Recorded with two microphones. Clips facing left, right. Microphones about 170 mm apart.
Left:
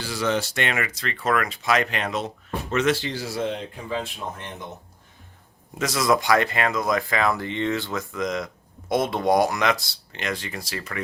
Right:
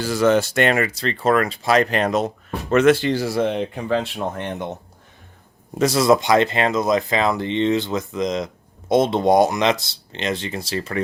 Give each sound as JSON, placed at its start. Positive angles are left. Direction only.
{"t": 0.0, "sound": "speech", "side_deg": -45}
{"t": 2.6, "sound": "speech", "side_deg": -55}
{"t": 5.8, "sound": "speech", "side_deg": -30}